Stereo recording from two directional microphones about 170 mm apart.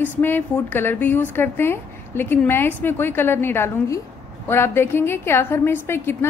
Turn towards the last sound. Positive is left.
turn(degrees=15)  # may be behind; listen again after turning